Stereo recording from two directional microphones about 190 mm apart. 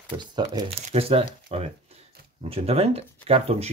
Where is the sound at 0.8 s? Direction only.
35° right (ahead or behind).